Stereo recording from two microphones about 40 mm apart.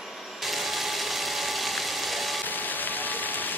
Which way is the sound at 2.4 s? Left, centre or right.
Left.